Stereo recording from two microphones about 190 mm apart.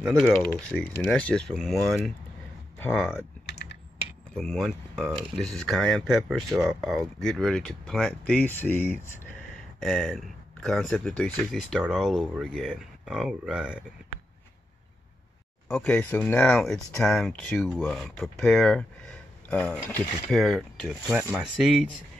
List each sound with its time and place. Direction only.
0.6 s speech: 5° left (ahead or behind)
3.4 s typing: 65° left (ahead or behind)
4.3 s speech: centre (ahead or behind)
15.7 s speech: 5° left (ahead or behind)